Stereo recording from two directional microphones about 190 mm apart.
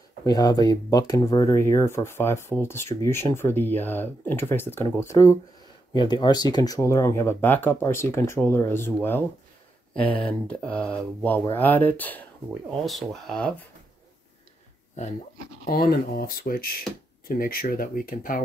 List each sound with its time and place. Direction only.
0.2 s speech: 20° left (ahead or behind)
10.4 s speech: 5° left (ahead or behind)
15.6 s speech: 50° left (ahead or behind)